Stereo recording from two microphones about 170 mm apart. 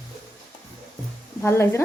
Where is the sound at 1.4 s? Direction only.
15° left (ahead or behind).